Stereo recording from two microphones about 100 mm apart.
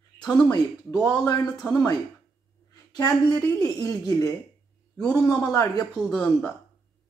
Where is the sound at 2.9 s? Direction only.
40° left (ahead or behind).